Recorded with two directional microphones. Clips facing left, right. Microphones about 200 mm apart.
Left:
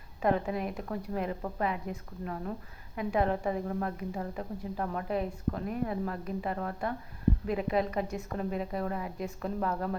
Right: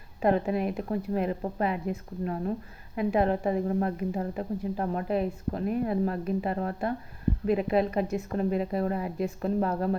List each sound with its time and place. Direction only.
0.2 s a woman's voice: 30° right (ahead or behind)